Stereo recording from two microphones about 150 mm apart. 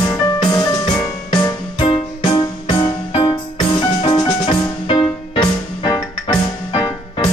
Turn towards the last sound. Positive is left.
turn(degrees=30)  # may be behind; listen again after turning